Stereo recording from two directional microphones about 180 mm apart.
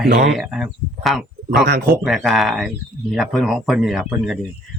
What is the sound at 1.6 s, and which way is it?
Speech, 60° right (ahead or behind).